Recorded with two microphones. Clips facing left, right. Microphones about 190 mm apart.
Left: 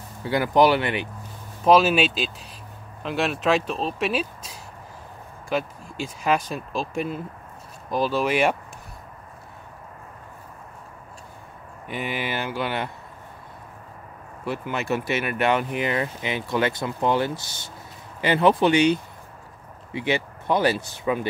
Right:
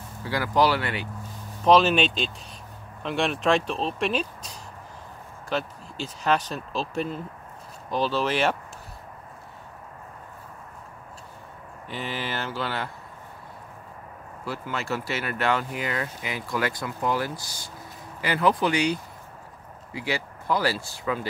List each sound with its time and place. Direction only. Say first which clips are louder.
0.2 s speech: left 4 dB; 20° left (ahead or behind)
1.6 s speech: left 1 dB; 5° left (ahead or behind)
11.9 s speech: left 3 dB; 15° left (ahead or behind)
14.4 s speech: left 4 dB; 20° left (ahead or behind)